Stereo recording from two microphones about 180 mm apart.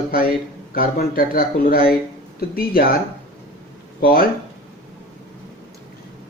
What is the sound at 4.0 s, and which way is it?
Speech, 55° left (ahead or behind).